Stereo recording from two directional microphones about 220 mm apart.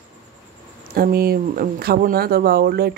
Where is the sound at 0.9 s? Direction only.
40° right (ahead or behind).